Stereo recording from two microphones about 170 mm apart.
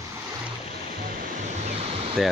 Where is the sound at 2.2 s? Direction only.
Centre (ahead or behind).